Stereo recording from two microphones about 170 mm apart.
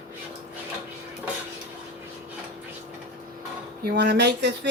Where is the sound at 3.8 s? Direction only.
75° right (ahead or behind).